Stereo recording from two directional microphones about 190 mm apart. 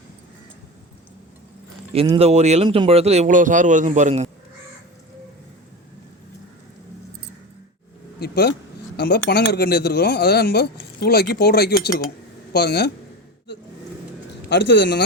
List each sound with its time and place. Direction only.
2.0 s a man's voice: 30° right (ahead or behind)
8.2 s speech: 55° left (ahead or behind)
14.5 s speech: 65° left (ahead or behind)